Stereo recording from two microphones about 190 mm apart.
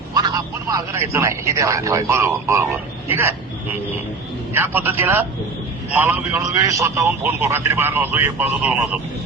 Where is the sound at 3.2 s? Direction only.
15° right (ahead or behind).